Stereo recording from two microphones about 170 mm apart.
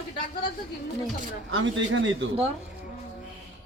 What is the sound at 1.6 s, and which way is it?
Speech, 90° right.